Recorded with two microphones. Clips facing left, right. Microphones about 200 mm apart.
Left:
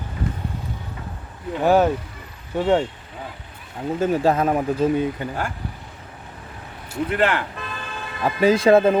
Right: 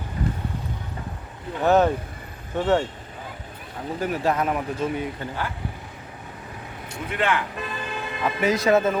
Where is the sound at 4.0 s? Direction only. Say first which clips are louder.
Left 5 dB; 25° left (ahead or behind).